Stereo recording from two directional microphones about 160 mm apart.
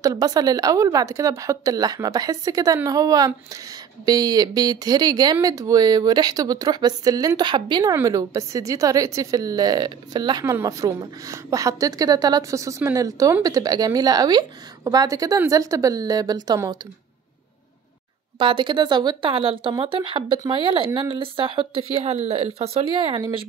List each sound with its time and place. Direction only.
0.0 s speech: 25° right (ahead or behind)
18.4 s speech: 30° right (ahead or behind)